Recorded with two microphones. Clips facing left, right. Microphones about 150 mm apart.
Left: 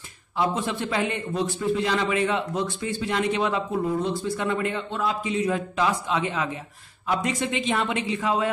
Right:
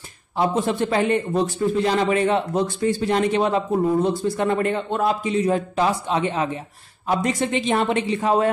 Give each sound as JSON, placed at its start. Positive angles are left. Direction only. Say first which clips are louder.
{"t": 0.4, "sound": "a man's voice", "louder": "right 5 dB", "side_deg": -40}